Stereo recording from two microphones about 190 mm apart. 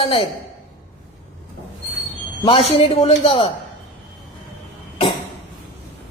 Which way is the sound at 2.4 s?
30° left (ahead or behind).